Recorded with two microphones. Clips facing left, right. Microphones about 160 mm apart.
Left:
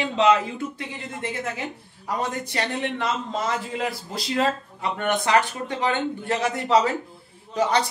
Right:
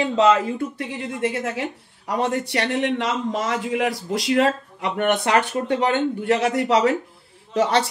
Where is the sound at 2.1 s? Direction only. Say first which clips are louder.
Right 5 dB; 70° right (ahead or behind).